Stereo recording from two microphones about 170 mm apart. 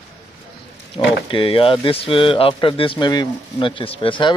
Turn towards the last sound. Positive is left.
turn(degrees=30)  # may be behind; listen again after turning